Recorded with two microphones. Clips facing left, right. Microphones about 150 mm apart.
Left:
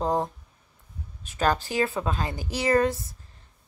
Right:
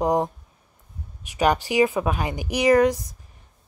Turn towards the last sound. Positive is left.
turn(degrees=-15)  # may be behind; listen again after turning